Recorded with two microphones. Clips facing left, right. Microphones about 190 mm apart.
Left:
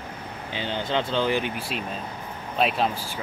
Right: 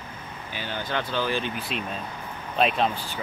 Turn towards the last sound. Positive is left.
turn(degrees=5)  # may be behind; listen again after turning